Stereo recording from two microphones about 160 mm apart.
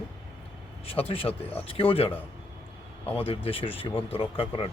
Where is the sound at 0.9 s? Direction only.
35° left (ahead or behind).